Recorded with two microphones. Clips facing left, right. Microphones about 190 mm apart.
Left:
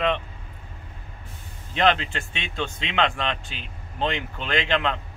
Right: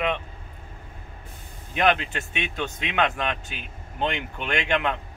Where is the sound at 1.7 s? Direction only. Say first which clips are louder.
Left 1 dB; 10° right (ahead or behind).